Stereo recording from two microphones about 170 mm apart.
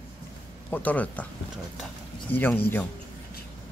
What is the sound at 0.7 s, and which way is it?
Speech, 10° left (ahead or behind).